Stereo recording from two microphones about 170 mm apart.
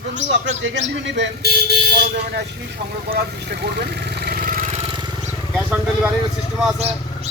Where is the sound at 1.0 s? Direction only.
90° right.